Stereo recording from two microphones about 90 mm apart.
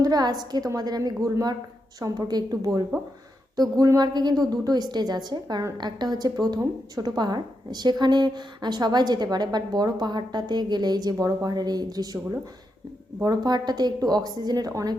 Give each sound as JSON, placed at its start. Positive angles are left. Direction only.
{"t": 0.0, "sound": "a woman's voice", "side_deg": -45}
{"t": 13.2, "sound": "a woman's voice", "side_deg": -50}